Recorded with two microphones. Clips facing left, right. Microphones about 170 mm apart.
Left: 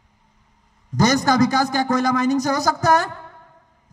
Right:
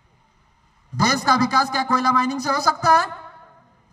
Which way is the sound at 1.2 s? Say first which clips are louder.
Left 3 dB; 45° left (ahead or behind).